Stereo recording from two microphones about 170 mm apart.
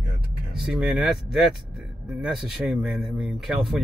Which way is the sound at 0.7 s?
Centre (ahead or behind).